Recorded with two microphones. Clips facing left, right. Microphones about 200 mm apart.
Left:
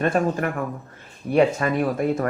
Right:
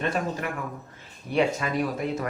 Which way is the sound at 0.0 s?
50° left (ahead or behind).